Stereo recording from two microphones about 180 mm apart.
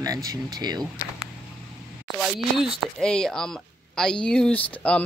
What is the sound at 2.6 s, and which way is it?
A woman's voice, centre (ahead or behind).